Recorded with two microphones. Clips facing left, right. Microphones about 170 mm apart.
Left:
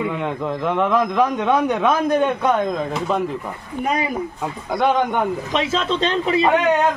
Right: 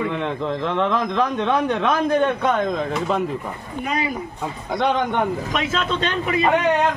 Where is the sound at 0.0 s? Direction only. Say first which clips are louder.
Even; 5° left (ahead or behind).